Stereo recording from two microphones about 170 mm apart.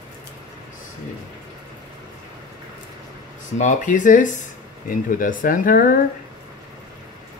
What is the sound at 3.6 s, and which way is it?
Speech, 50° left (ahead or behind).